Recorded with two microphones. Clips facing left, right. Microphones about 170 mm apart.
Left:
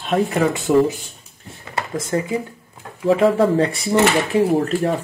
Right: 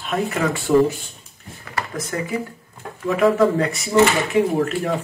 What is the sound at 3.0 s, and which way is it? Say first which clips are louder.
Speech: left 1 dB; 30° left (ahead or behind).